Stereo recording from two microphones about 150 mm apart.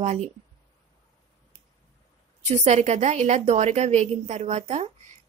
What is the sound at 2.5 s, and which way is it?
A woman's voice, 50° right (ahead or behind).